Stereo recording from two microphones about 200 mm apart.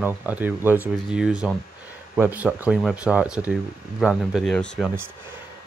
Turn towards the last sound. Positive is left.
turn(degrees=5)  # may be behind; listen again after turning